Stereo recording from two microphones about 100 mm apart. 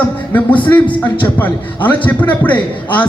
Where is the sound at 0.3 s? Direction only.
15° left (ahead or behind).